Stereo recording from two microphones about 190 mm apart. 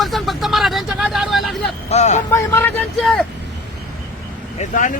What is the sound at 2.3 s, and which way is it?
Speech, 10° left (ahead or behind).